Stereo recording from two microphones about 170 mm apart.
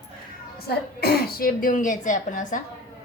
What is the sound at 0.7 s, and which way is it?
Speech, 65° left (ahead or behind).